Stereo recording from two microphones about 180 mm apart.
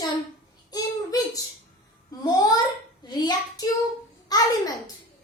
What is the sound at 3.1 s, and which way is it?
A child's voice, 25° left (ahead or behind).